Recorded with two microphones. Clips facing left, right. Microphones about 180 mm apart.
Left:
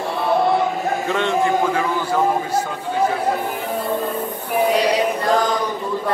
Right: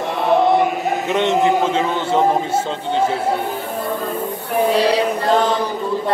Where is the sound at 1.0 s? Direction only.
20° right (ahead or behind).